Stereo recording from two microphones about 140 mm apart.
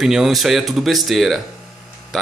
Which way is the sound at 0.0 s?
5° right (ahead or behind).